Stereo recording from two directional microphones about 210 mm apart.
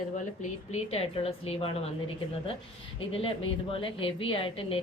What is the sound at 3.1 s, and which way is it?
Speech, 25° left (ahead or behind).